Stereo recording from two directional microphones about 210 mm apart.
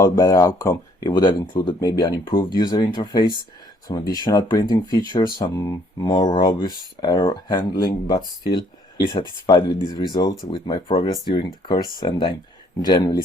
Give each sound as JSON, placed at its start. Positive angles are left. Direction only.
{"t": 0.0, "sound": "speech", "side_deg": 15}